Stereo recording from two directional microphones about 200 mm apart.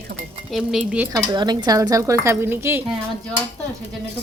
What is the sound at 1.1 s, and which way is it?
Stir, 20° right (ahead or behind).